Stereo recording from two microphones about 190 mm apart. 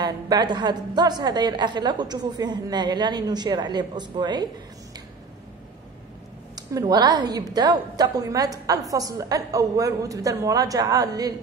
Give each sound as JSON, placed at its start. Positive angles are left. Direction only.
{"t": 0.0, "sound": "a woman's voice", "side_deg": -20}
{"t": 6.5, "sound": "a woman's voice", "side_deg": -20}